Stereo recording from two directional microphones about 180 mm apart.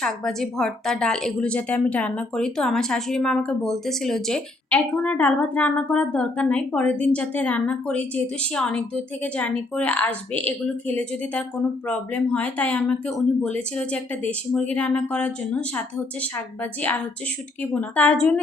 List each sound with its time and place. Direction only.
0.0 s a woman's voice: centre (ahead or behind)
17.7 s speech: 10° left (ahead or behind)